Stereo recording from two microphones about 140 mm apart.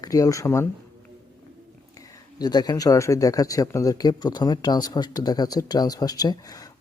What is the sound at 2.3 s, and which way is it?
Speech, 30° left (ahead or behind).